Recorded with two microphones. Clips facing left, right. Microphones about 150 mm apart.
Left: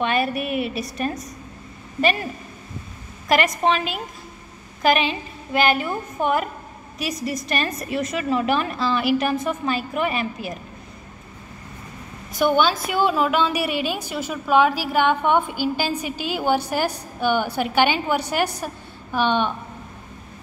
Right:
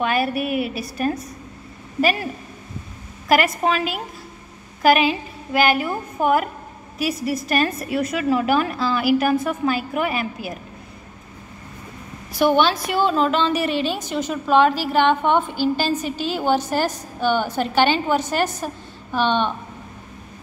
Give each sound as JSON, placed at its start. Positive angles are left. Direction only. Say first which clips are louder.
{"t": 0.0, "sound": "a woman's voice", "louder": "right 1 dB", "side_deg": -5}
{"t": 2.0, "sound": "a woman's voice", "louder": "right 1 dB", "side_deg": -5}
{"t": 3.3, "sound": "a woman's voice", "louder": "right 1 dB", "side_deg": -5}
{"t": 12.4, "sound": "a woman's voice", "louder": "right 2 dB", "side_deg": 0}